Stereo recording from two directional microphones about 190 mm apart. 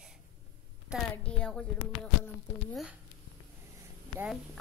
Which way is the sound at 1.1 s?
5° left (ahead or behind).